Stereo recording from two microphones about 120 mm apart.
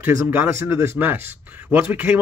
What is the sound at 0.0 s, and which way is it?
Speech, 15° right (ahead or behind).